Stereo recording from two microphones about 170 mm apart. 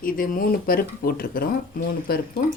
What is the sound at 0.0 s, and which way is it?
A woman's voice, 55° left (ahead or behind).